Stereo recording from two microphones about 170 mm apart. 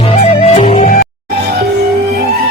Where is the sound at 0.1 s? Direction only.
40° left (ahead or behind).